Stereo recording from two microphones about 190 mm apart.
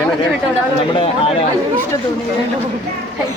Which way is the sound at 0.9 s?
25° left (ahead or behind).